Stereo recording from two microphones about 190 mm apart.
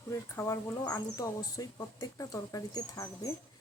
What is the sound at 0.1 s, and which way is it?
Speech, 15° left (ahead or behind).